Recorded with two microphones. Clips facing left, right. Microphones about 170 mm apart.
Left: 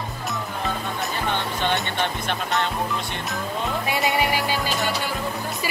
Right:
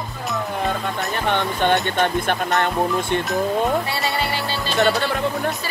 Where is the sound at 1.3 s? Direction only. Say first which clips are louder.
Right 7 dB; 60° right (ahead or behind).